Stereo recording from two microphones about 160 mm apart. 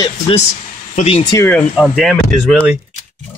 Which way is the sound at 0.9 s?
45° left (ahead or behind).